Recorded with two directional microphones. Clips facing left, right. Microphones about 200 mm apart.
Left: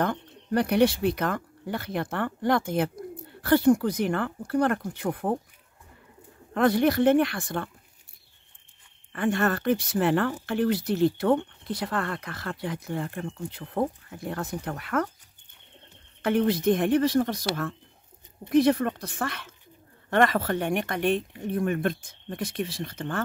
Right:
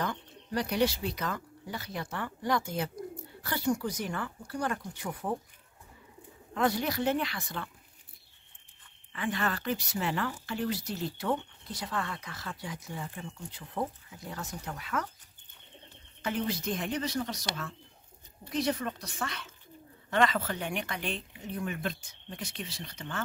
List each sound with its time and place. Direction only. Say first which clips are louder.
0.0 s speech: left 7 dB; 55° left (ahead or behind)
6.5 s speech: left 8 dB; 60° left (ahead or behind)
9.1 s speech: left 8 dB; 50° left (ahead or behind)
16.2 s speech: left 9 dB; 60° left (ahead or behind)
18.5 s speech: left 10 dB; 60° left (ahead or behind)